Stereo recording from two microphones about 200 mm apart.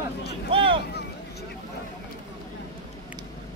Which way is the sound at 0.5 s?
25° right (ahead or behind).